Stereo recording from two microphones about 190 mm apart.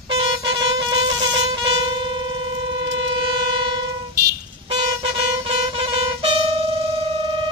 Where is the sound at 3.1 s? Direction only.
25° right (ahead or behind).